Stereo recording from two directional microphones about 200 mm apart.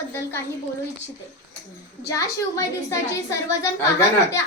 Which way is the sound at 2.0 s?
15° left (ahead or behind).